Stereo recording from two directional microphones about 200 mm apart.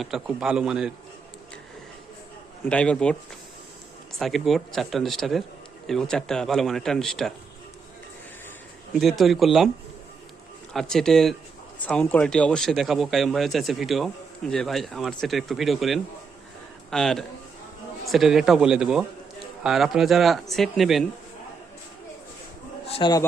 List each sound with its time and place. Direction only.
0.0 s speech: centre (ahead or behind)
2.6 s speech: 5° left (ahead or behind)
4.2 s speech: centre (ahead or behind)
9.0 s speech: centre (ahead or behind)
10.8 s speech: 5° left (ahead or behind)
22.9 s a man's voice: 25° left (ahead or behind)